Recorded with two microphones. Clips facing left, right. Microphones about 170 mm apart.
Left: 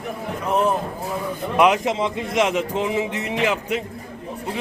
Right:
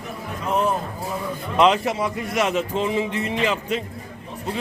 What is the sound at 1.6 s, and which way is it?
Speech, 10° left (ahead or behind).